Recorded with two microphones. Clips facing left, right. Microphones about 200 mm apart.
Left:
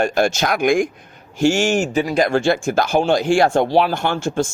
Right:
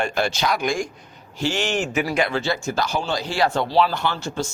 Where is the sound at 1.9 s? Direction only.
30° left (ahead or behind).